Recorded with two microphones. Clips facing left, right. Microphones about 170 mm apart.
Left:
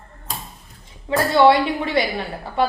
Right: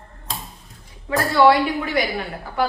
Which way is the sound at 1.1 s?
25° left (ahead or behind).